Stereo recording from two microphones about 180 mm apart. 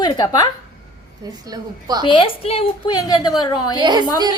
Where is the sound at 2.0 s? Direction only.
30° left (ahead or behind).